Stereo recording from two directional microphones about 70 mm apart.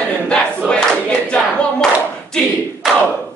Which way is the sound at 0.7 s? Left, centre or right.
Centre.